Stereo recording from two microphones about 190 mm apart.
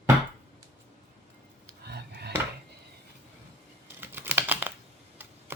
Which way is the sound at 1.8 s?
60° right (ahead or behind).